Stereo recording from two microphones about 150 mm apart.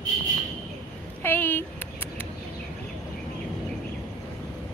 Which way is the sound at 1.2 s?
15° left (ahead or behind).